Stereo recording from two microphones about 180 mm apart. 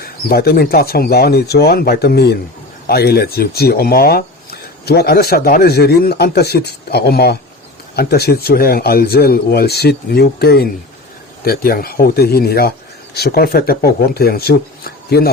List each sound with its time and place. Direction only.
0.0 s speech: 60° left (ahead or behind)